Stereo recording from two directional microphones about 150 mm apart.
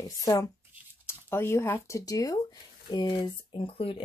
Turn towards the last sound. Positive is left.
turn(degrees=40)  # may be behind; listen again after turning